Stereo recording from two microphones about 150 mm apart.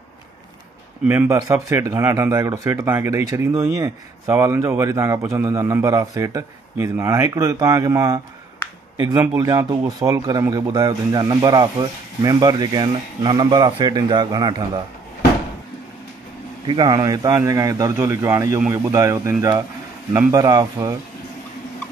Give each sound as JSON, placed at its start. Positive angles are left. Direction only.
{"t": 1.0, "sound": "speech", "side_deg": -15}
{"t": 9.2, "sound": "speech", "side_deg": -15}
{"t": 16.6, "sound": "speech", "side_deg": -30}